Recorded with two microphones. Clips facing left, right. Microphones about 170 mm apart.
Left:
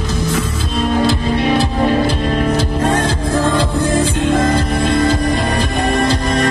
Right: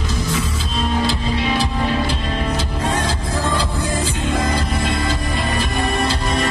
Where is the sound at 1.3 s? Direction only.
50° left (ahead or behind).